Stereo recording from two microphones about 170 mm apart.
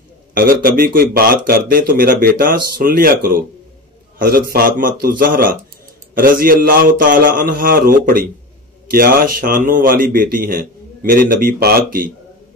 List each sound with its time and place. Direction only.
0.3 s a man's voice: 55° right (ahead or behind)